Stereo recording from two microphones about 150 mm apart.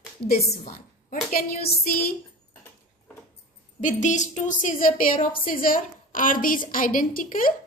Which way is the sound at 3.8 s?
55° left (ahead or behind).